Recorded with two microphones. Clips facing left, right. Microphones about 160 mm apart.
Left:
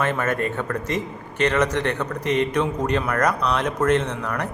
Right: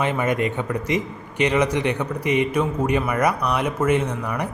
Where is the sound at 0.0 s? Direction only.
15° right (ahead or behind).